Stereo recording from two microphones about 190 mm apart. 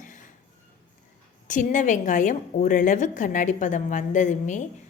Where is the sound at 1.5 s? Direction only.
40° left (ahead or behind).